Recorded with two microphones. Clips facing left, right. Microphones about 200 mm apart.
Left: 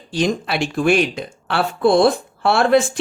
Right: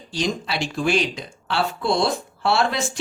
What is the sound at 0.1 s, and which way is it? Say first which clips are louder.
Speech: left 5 dB; 55° left (ahead or behind).